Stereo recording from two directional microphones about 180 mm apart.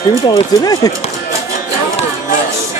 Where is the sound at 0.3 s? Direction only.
20° left (ahead or behind).